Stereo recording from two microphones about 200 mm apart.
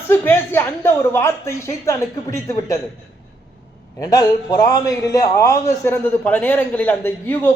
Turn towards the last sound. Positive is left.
turn(degrees=10)  # may be behind; listen again after turning